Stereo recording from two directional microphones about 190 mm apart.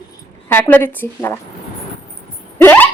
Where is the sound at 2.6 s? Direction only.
10° left (ahead or behind).